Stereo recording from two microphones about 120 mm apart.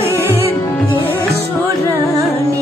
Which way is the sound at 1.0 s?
15° left (ahead or behind).